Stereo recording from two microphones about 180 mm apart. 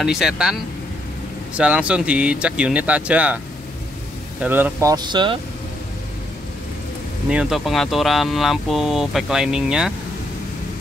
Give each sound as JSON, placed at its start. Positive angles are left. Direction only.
{"t": 0.0, "sound": "speech", "side_deg": 0}
{"t": 1.6, "sound": "speech", "side_deg": -5}
{"t": 4.4, "sound": "speech", "side_deg": -10}
{"t": 7.2, "sound": "speech", "side_deg": -5}